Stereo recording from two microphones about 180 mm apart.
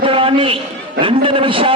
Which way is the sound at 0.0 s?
30° right (ahead or behind).